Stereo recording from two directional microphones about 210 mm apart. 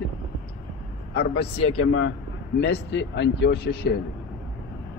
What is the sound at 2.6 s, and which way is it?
Speech, 55° left (ahead or behind).